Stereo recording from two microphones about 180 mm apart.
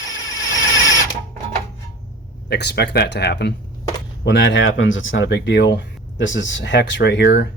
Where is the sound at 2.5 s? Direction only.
65° left (ahead or behind).